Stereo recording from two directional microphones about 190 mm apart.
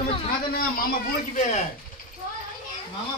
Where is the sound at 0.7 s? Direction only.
50° left (ahead or behind).